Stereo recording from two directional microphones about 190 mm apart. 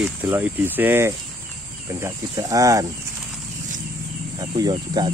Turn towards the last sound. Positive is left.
turn(degrees=-20)  # may be behind; listen again after turning